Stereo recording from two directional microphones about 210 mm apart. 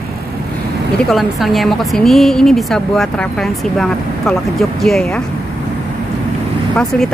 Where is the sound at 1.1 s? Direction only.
Centre (ahead or behind).